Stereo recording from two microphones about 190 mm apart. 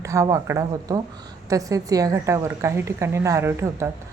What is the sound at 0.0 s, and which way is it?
A woman's voice, 15° right (ahead or behind).